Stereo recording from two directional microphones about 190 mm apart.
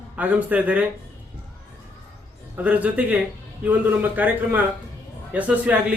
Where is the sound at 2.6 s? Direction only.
10° right (ahead or behind).